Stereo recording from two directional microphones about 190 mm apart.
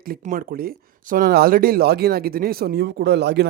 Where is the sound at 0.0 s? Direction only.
45° right (ahead or behind).